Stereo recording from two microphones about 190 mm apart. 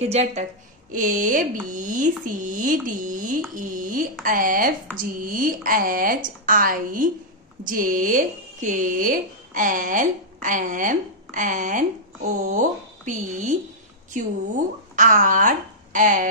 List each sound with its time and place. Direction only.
0.0 s a woman's voice: 35° right (ahead or behind)
0.9 s speech: 45° right (ahead or behind)